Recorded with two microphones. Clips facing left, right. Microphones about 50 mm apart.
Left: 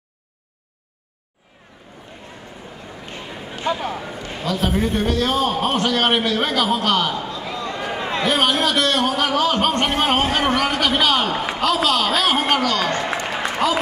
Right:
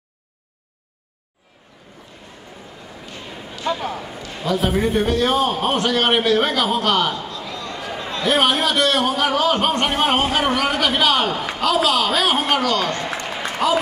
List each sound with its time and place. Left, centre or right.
3.2 s a sound: centre
3.6 s a man's voice: centre
7.2 s a sound: centre
8.3 s a man's voice: centre
13.0 s applause: left
13.6 s a man's voice: centre